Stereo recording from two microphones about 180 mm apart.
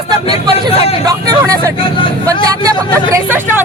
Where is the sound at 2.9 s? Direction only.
15° right (ahead or behind).